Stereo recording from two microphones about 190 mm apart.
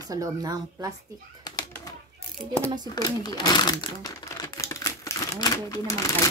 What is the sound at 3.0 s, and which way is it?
Crumpling, 20° left (ahead or behind).